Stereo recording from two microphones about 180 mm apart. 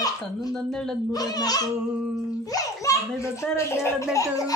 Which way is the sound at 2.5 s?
15° left (ahead or behind).